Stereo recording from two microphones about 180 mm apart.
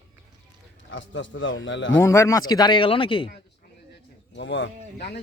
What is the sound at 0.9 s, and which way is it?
Speech, 90° left.